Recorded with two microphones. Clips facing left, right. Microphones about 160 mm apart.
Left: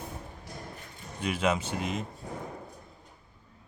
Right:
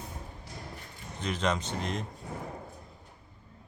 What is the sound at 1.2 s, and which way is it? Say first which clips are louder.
Speech: left 2 dB; 10° left (ahead or behind).